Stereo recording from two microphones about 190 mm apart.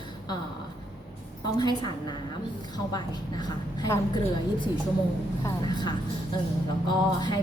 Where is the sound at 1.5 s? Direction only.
20° left (ahead or behind).